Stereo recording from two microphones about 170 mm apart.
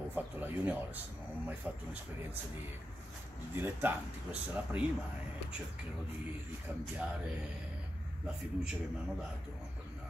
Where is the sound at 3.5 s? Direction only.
10° right (ahead or behind).